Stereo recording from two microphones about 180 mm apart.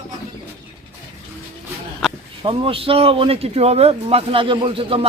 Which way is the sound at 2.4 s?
30° right (ahead or behind).